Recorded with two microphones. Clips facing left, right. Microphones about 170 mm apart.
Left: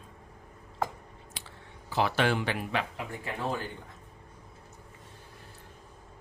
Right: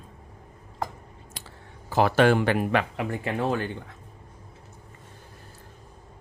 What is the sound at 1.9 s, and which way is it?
Speech, 50° right (ahead or behind).